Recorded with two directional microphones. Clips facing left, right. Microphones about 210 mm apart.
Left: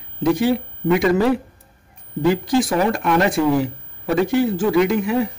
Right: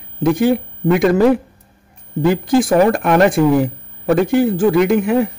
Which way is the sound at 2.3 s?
50° right (ahead or behind).